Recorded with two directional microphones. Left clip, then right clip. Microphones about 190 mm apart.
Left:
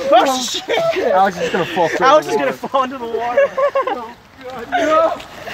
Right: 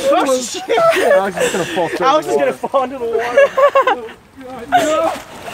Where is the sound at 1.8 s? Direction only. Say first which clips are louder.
Left 3 dB; 55° left (ahead or behind).